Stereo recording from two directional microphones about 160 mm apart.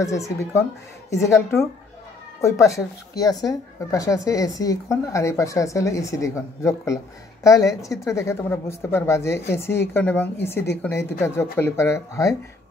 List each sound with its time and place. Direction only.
0.0 s speech: 20° left (ahead or behind)